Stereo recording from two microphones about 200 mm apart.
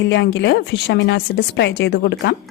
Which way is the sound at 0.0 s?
60° left (ahead or behind).